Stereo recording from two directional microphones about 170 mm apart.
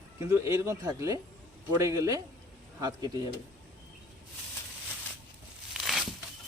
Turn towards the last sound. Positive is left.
turn(degrees=0)  # may be behind; listen again after turning